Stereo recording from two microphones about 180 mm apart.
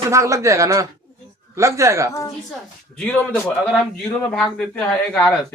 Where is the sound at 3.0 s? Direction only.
5° left (ahead or behind).